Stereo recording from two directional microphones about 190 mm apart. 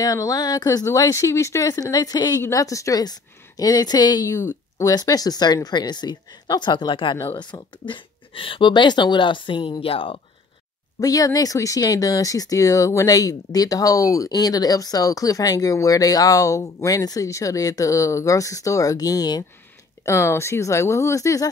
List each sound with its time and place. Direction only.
0.0 s speech: 20° left (ahead or behind)
11.0 s speech: 20° left (ahead or behind)